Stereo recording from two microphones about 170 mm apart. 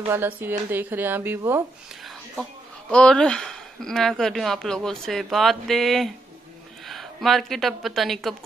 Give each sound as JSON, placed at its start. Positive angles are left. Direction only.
{"t": 0.1, "sound": "speech", "side_deg": -10}
{"t": 2.9, "sound": "speech", "side_deg": 5}